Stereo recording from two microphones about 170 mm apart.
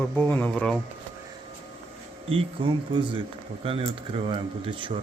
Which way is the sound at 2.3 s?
30° right (ahead or behind).